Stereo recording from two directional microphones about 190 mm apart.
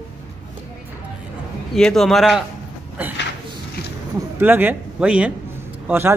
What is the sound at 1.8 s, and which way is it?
Speech, centre (ahead or behind).